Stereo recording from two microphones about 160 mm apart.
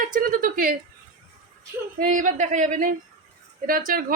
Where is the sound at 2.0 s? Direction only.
55° right (ahead or behind).